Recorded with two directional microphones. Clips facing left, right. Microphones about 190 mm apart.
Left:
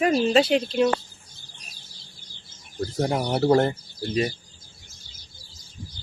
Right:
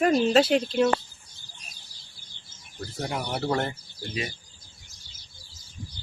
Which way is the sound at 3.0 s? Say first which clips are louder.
Left 7 dB; 35° left (ahead or behind).